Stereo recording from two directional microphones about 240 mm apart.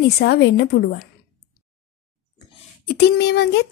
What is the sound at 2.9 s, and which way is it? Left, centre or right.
Speech, left.